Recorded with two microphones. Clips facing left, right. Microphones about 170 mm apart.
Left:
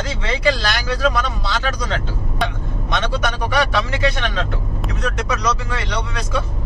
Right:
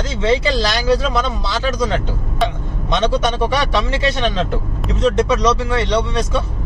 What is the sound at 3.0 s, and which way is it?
Speech, 25° right (ahead or behind).